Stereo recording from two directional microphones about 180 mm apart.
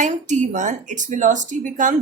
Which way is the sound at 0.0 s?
40° right (ahead or behind).